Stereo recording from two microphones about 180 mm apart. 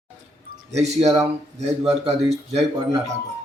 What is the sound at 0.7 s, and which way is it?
A man's voice, 40° right (ahead or behind).